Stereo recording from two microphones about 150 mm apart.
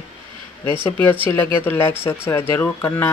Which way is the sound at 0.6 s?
15° left (ahead or behind).